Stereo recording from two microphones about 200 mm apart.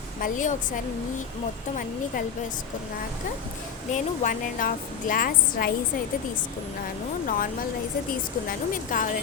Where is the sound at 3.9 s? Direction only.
40° left (ahead or behind).